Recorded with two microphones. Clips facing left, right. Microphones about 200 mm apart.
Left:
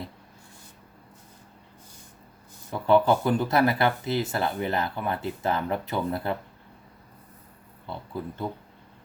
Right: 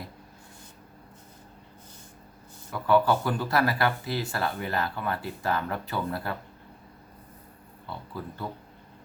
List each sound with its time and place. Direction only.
2.7 s speech: 25° left (ahead or behind)
7.9 s speech: 20° left (ahead or behind)